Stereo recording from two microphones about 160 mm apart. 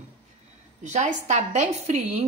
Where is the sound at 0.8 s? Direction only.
45° right (ahead or behind).